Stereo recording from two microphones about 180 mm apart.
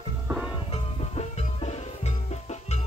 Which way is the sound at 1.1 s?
35° left (ahead or behind).